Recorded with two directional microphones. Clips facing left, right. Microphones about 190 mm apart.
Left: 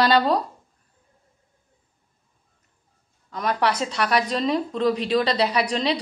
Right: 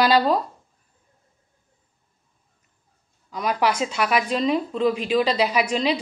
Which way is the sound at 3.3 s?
5° right (ahead or behind).